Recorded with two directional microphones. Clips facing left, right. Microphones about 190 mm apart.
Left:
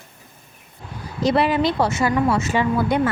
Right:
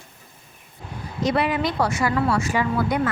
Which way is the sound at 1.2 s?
30° left (ahead or behind).